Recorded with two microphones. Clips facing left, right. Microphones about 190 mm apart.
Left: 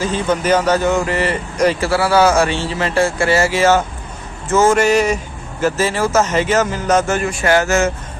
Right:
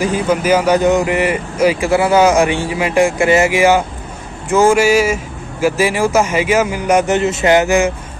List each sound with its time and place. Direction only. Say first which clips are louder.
0.0 s speech: right 2 dB; 10° right (ahead or behind)